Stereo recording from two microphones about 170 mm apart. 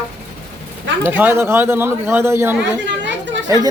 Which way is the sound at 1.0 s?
10° right (ahead or behind).